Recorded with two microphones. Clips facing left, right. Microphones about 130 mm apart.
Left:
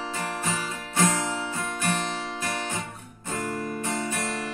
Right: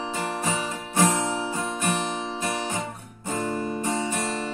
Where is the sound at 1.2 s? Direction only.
25° right (ahead or behind).